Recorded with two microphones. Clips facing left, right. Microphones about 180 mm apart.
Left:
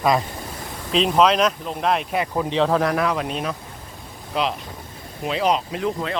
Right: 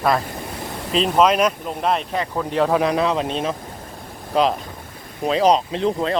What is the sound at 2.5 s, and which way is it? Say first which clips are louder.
Speech: right 2 dB; 5° right (ahead or behind).